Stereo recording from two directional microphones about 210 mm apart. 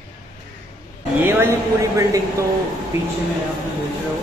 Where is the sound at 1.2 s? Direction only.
10° right (ahead or behind).